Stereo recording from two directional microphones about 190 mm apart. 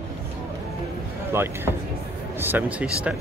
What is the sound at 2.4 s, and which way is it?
Speech, 10° right (ahead or behind).